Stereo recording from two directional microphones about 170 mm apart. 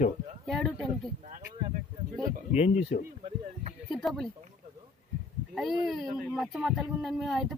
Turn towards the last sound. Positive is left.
turn(degrees=0)  # may be behind; listen again after turning